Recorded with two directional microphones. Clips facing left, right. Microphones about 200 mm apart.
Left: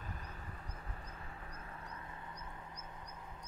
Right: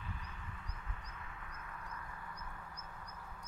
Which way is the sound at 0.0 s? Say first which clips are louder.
Left 1 dB; 40° left (ahead or behind).